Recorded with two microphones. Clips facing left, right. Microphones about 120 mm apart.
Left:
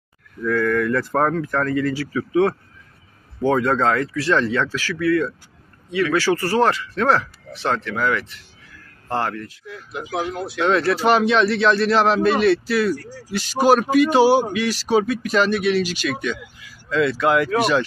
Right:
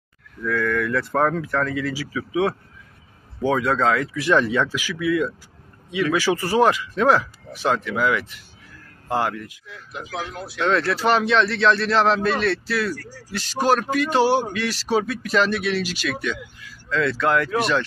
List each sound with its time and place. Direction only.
0.4 s a man's voice: centre (ahead or behind)
4.1 s speech: 15° right (ahead or behind)
9.9 s speech: 15° left (ahead or behind)
10.6 s a man's voice: 5° left (ahead or behind)
12.9 s speech: 15° left (ahead or behind)
13.3 s a man's voice: 5° left (ahead or behind)